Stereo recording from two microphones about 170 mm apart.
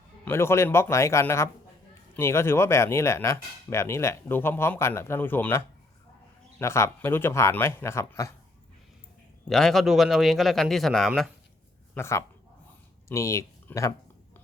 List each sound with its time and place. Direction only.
0.3 s speech: 15° left (ahead or behind)
9.5 s speech: centre (ahead or behind)
11.9 s speech: 15° left (ahead or behind)